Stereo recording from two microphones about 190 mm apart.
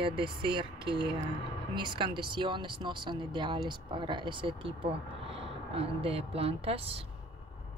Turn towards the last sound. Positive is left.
turn(degrees=-30)  # may be behind; listen again after turning